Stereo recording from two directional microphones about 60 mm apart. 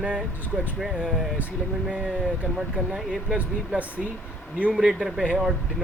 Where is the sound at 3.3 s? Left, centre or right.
Right.